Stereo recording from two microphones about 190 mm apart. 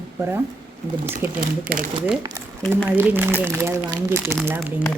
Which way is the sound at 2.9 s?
10° right (ahead or behind).